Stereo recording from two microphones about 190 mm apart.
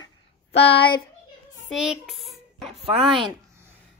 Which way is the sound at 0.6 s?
30° left (ahead or behind).